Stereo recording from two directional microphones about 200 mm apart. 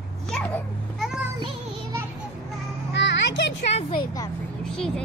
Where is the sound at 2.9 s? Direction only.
60° left (ahead or behind).